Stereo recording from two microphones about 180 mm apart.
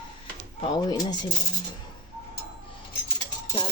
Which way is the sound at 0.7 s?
20° left (ahead or behind).